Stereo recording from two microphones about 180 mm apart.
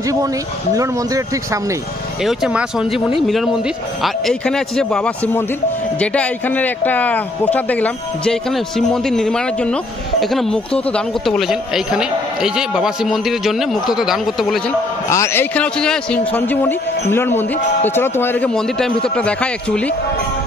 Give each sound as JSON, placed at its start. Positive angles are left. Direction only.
{"t": 0.0, "sound": "speech", "side_deg": -20}
{"t": 2.2, "sound": "a man's voice", "side_deg": -5}
{"t": 15.0, "sound": "a man's voice", "side_deg": 15}